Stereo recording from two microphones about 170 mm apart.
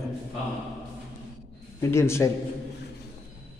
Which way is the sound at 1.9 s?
15° left (ahead or behind).